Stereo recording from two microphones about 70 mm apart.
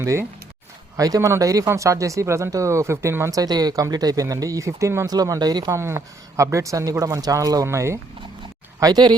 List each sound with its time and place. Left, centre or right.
0.0 s speech: right
3.3 s speech: right
5.0 s speech: right
5.7 s speech: right
7.7 s speech: right
8.8 s speech: right